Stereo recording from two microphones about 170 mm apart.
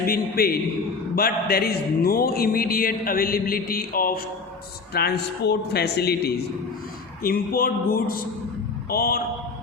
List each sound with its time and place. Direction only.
0.1 s speech: 60° left (ahead or behind)
4.9 s a man's voice: 70° left (ahead or behind)
7.2 s speech: 60° left (ahead or behind)